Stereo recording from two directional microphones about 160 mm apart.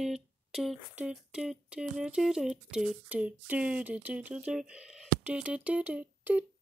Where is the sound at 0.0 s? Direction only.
Centre (ahead or behind).